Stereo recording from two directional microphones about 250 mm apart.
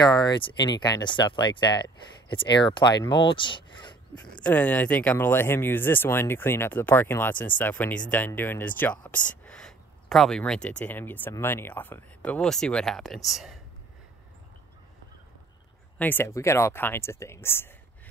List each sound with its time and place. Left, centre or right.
0.1 s speech: centre
3.3 s a sound: centre
4.1 s speech: centre
16.0 s speech: centre